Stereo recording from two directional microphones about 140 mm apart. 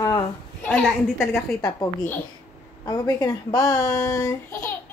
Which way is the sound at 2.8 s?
25° left (ahead or behind).